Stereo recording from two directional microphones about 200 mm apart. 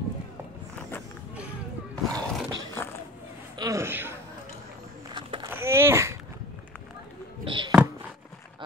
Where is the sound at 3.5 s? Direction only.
15° right (ahead or behind).